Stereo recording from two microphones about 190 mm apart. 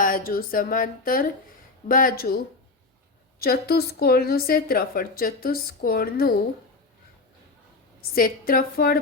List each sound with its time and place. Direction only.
0.0 s a woman's voice: 50° left (ahead or behind)
3.4 s a woman's voice: 55° left (ahead or behind)
8.0 s a woman's voice: 50° left (ahead or behind)